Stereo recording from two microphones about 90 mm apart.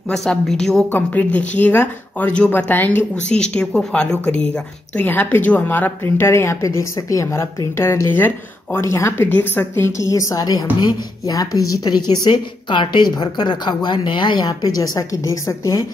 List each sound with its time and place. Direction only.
0.1 s a woman's voice: 5° left (ahead or behind)
0.9 s a woman's voice: 20° left (ahead or behind)
3.3 s a woman's voice: 10° left (ahead or behind); by 9.3 s 30° left (ahead or behind)
9.3 s a woman's voice: 20° left (ahead or behind); by 14.7 s 55° left (ahead or behind)
14.8 s a woman's voice: 40° left (ahead or behind)